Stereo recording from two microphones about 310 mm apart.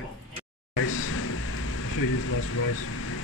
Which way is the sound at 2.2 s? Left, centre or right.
Left.